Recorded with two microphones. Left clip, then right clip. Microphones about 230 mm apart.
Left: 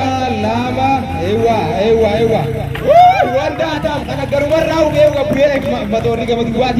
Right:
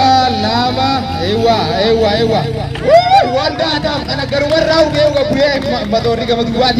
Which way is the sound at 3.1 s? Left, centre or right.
Right.